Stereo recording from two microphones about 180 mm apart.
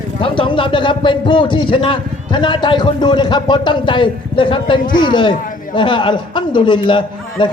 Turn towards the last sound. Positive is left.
turn(degrees=25)  # may be behind; listen again after turning